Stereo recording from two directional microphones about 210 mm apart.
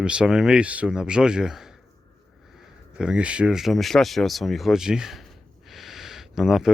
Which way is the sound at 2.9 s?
5° right (ahead or behind).